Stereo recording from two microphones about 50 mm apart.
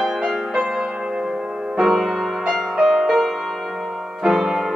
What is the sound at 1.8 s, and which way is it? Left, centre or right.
Music, centre.